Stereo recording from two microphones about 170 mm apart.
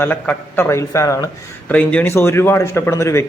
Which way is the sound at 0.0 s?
10° left (ahead or behind).